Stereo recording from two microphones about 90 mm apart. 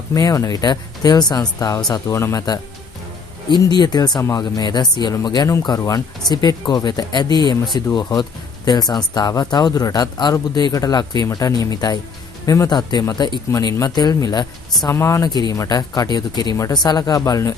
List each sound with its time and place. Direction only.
0.1 s speech: 40° left (ahead or behind)
3.4 s speech: 55° left (ahead or behind)
4.2 s speech: 40° left (ahead or behind)
5.8 s speech: 40° left (ahead or behind)
13.2 s speech: 50° left (ahead or behind)
14.9 s speech: 30° left (ahead or behind)
15.2 s speech: 50° left (ahead or behind)